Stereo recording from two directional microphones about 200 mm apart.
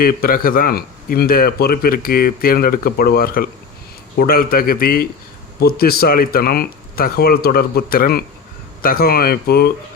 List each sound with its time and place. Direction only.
0.0 s speech: 45° left (ahead or behind)